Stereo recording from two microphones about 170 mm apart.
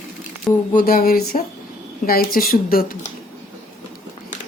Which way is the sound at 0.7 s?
60° left (ahead or behind).